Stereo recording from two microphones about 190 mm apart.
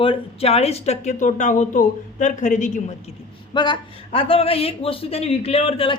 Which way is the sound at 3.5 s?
25° left (ahead or behind).